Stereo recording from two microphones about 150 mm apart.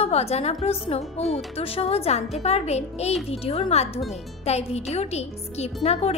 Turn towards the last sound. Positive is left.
turn(degrees=45)  # may be behind; listen again after turning